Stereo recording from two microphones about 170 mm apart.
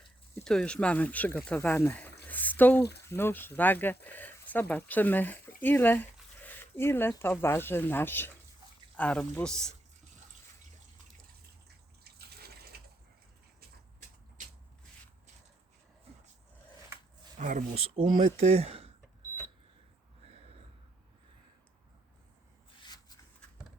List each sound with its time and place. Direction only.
0.4 s speech: 5° left (ahead or behind)
2.2 s a sound: 10° left (ahead or behind)
3.1 s speech: 15° left (ahead or behind)
12.0 s water: 70° right (ahead or behind)
17.4 s speech: 50° right (ahead or behind)
20.2 s a sound: 35° right (ahead or behind)
22.8 s shuffling cards: 25° left (ahead or behind)